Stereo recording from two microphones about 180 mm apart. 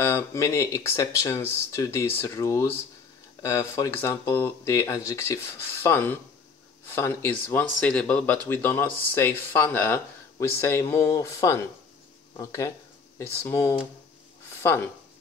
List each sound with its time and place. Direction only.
0.0 s speech: 15° left (ahead or behind)